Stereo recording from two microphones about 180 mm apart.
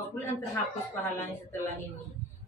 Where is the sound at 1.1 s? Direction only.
10° left (ahead or behind).